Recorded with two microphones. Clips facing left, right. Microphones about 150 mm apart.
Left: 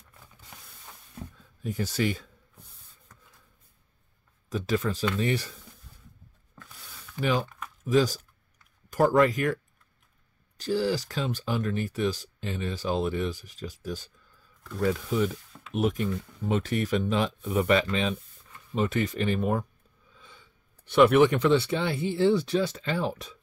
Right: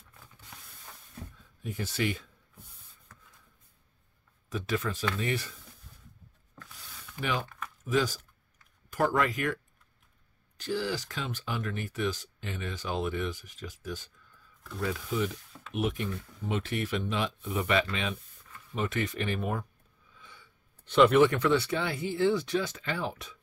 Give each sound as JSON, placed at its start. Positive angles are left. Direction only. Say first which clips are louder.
{"t": 1.6, "sound": "speech", "louder": "left 4 dB", "side_deg": 35}
{"t": 4.5, "sound": "speech", "louder": "left 4 dB", "side_deg": 35}
{"t": 7.2, "sound": "speech", "louder": "left 6 dB", "side_deg": 35}
{"t": 10.6, "sound": "speech", "louder": "left 5 dB", "side_deg": 35}
{"t": 20.2, "sound": "a sound", "louder": "left 1 dB", "side_deg": 30}
{"t": 20.8, "sound": "speech", "louder": "left 2 dB", "side_deg": 10}
{"t": 21.3, "sound": "speech", "louder": "left 4 dB", "side_deg": 25}